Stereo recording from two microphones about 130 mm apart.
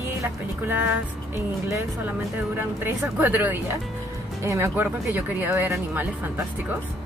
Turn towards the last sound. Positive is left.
turn(degrees=-15)  # may be behind; listen again after turning